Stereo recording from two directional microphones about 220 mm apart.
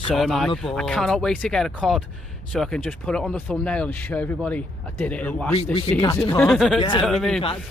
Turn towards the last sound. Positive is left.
turn(degrees=0)  # may be behind; listen again after turning